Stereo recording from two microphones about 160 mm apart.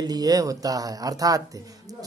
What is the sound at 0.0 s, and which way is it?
Speech, 25° right (ahead or behind).